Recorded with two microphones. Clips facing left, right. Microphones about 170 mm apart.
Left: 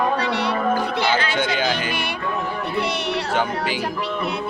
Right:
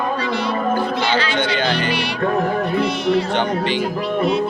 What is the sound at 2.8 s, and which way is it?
Speech, 70° left (ahead or behind).